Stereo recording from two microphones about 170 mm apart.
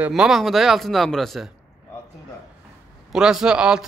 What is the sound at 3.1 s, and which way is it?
Speech, 5° right (ahead or behind).